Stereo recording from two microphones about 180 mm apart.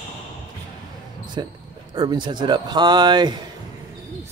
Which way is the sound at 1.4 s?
25° right (ahead or behind).